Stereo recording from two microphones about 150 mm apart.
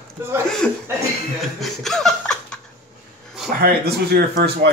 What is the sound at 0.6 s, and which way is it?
Speech, 5° left (ahead or behind).